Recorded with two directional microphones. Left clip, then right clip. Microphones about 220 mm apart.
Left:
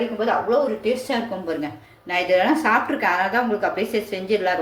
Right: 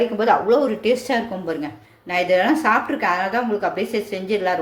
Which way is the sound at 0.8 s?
35° right (ahead or behind).